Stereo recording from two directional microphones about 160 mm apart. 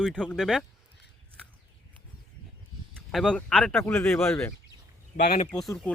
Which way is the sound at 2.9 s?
5° left (ahead or behind).